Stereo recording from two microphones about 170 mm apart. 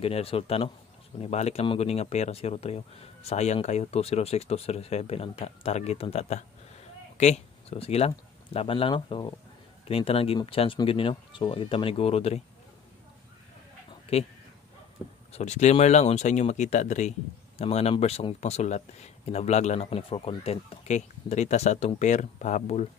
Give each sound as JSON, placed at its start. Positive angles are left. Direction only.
{"t": 0.0, "sound": "speech", "side_deg": 35}
{"t": 14.1, "sound": "speech", "side_deg": 35}
{"t": 15.3, "sound": "speech", "side_deg": 45}